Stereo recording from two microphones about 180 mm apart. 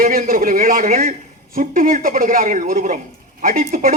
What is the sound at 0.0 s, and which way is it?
Speech, 50° right (ahead or behind).